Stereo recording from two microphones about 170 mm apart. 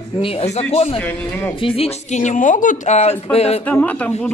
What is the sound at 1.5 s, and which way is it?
Speech, 30° left (ahead or behind).